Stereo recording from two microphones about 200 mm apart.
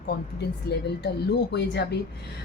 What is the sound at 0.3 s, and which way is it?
Speech, 55° left (ahead or behind).